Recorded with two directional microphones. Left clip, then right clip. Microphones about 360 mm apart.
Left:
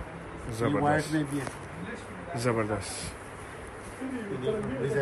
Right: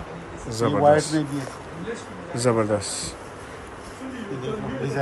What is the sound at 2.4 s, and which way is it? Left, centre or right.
Speech, centre.